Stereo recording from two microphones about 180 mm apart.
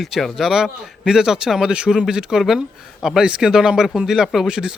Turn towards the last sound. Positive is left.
turn(degrees=-5)  # may be behind; listen again after turning